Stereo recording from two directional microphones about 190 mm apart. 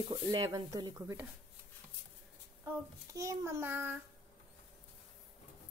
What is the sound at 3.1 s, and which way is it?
Child singing, 15° right (ahead or behind).